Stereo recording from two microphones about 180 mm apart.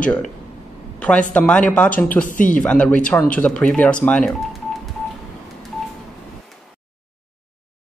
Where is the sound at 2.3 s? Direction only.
45° left (ahead or behind).